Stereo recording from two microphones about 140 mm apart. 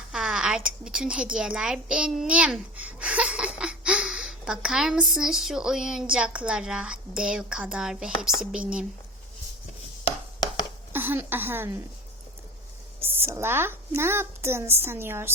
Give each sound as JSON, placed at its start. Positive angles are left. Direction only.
{"t": 0.1, "sound": "a woman's voice", "side_deg": -5}
{"t": 10.9, "sound": "a woman's voice", "side_deg": -15}
{"t": 13.0, "sound": "a woman's voice", "side_deg": -15}